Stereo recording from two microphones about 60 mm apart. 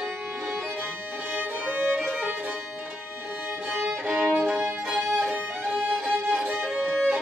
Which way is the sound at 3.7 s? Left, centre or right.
Right.